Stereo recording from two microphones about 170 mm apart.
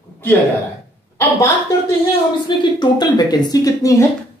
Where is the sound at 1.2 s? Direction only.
10° left (ahead or behind).